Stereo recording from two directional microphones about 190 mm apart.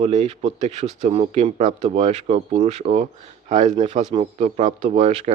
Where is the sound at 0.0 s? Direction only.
35° right (ahead or behind).